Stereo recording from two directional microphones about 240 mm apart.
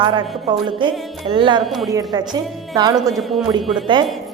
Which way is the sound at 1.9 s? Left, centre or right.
Centre.